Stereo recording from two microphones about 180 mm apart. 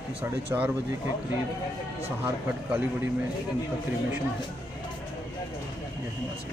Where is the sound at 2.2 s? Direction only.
10° right (ahead or behind).